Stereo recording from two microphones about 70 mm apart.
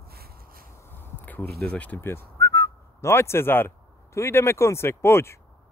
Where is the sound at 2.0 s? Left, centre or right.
Left.